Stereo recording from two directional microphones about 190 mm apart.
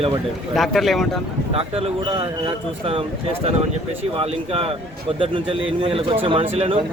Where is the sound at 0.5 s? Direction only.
Centre (ahead or behind).